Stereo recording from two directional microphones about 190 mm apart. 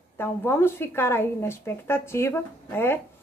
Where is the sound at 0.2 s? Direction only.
10° left (ahead or behind).